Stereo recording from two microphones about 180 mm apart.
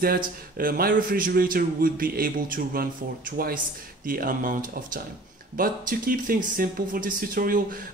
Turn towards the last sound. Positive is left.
turn(degrees=-50)  # may be behind; listen again after turning